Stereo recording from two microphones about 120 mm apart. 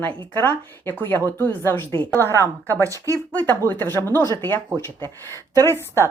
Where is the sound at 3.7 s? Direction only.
15° left (ahead or behind).